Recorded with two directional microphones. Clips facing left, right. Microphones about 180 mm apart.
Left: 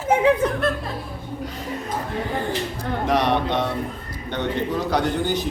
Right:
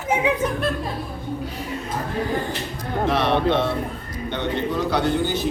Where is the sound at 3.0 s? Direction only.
15° left (ahead or behind).